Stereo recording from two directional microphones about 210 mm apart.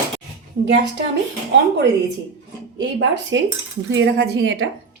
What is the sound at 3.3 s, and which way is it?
A woman's voice, 60° right (ahead or behind).